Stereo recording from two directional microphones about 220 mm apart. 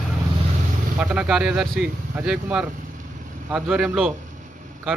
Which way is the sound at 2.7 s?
35° right (ahead or behind).